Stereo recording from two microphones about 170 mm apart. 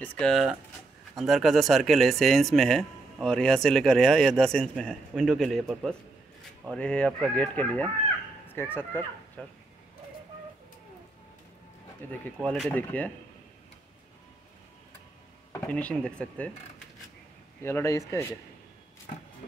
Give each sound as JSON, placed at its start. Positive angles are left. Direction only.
{"t": 0.0, "sound": "speech", "side_deg": 5}
{"t": 12.0, "sound": "speech", "side_deg": 10}
{"t": 12.4, "sound": "speech", "side_deg": -5}
{"t": 12.6, "sound": "speech", "side_deg": 10}
{"t": 15.7, "sound": "speech", "side_deg": 5}
{"t": 17.6, "sound": "speech", "side_deg": 15}